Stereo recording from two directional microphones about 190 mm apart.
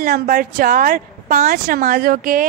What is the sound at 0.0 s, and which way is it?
A woman's voice, 50° right (ahead or behind).